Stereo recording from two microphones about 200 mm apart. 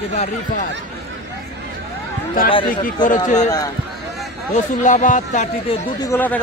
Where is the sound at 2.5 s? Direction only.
25° left (ahead or behind).